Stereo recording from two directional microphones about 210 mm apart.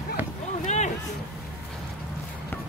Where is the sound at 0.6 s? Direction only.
35° left (ahead or behind).